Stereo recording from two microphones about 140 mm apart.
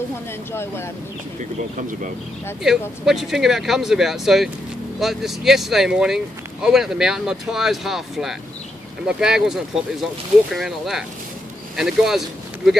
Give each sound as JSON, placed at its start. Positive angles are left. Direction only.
{"t": 0.5, "sound": "speech", "side_deg": 15}
{"t": 1.4, "sound": "speech", "side_deg": -65}
{"t": 3.1, "sound": "speech", "side_deg": -5}